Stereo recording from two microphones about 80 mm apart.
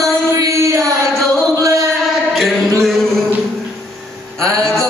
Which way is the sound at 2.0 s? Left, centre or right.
Centre.